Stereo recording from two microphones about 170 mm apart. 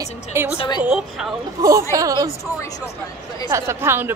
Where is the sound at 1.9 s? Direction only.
20° right (ahead or behind).